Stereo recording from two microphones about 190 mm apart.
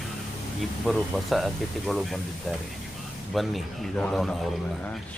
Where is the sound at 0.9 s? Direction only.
Centre (ahead or behind).